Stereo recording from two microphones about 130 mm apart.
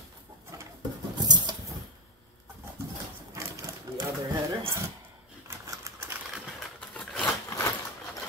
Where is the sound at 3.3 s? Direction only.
20° right (ahead or behind).